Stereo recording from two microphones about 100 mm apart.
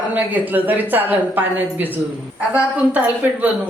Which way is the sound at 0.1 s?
20° right (ahead or behind).